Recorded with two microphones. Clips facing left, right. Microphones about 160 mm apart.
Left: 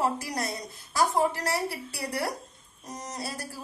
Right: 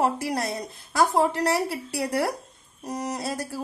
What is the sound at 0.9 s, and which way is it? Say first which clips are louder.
A woman's voice: right 3 dB; 70° right (ahead or behind).